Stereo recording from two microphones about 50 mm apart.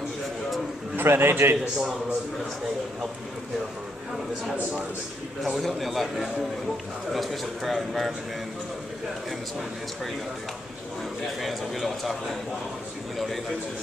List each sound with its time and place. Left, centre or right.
0.9 s a man's voice: right
1.8 s a man's voice: centre
5.4 s a man's voice: centre
11.4 s a man's voice: centre